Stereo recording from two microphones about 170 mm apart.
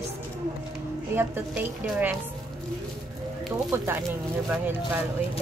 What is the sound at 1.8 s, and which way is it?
Speech, 5° right (ahead or behind).